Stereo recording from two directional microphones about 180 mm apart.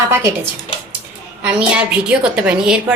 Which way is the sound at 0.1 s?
15° right (ahead or behind).